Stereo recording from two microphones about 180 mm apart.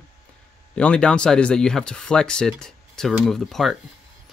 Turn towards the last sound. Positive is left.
turn(degrees=0)  # may be behind; listen again after turning